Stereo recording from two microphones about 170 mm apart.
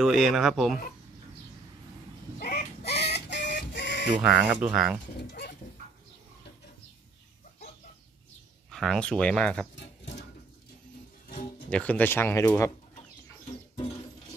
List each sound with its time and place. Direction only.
0.0 s speech: centre (ahead or behind)
2.3 s a sound: 45° left (ahead or behind)
3.0 s printer: 80° left
4.1 s speech: 5° right (ahead or behind)
5.2 s dog: 70° left (ahead or behind)
8.6 s speech: centre (ahead or behind)
11.7 s speech: 10° left (ahead or behind)